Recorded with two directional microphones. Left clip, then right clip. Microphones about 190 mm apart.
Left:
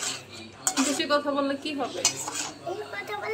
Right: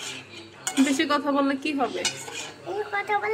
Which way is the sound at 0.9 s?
20° right (ahead or behind).